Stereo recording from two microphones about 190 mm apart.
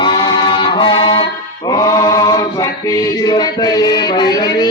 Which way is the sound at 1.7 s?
20° left (ahead or behind).